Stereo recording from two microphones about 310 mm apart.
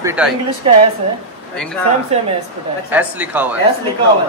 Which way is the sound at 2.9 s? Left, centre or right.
Centre.